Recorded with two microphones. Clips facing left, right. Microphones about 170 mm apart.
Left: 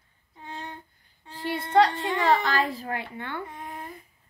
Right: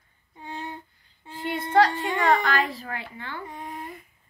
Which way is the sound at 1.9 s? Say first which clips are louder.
Right 1 dB; centre (ahead or behind).